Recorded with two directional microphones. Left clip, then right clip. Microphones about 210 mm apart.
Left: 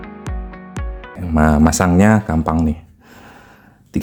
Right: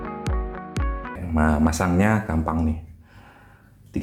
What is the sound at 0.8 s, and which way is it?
Music, centre (ahead or behind).